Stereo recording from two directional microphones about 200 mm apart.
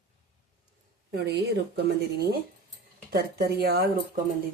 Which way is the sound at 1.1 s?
55° right (ahead or behind).